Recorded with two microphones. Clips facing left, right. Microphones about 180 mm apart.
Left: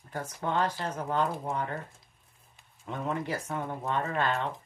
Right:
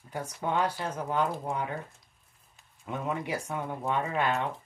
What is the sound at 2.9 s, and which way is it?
Speech, 10° right (ahead or behind).